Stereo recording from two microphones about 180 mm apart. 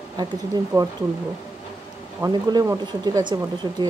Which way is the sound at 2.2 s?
20° right (ahead or behind).